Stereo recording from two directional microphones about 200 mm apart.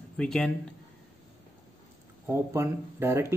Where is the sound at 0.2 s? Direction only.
5° left (ahead or behind).